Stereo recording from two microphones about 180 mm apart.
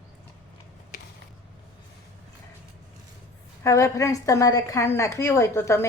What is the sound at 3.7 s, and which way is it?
A woman's voice, 15° left (ahead or behind).